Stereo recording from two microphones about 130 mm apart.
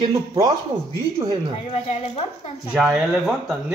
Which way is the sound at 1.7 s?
60° left (ahead or behind).